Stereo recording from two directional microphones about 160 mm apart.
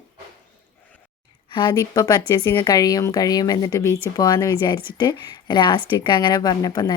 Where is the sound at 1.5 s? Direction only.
30° left (ahead or behind).